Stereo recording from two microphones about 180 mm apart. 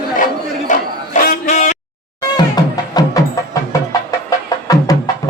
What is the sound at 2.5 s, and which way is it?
Music, 20° left (ahead or behind).